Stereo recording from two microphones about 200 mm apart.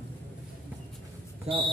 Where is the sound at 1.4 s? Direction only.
25° right (ahead or behind).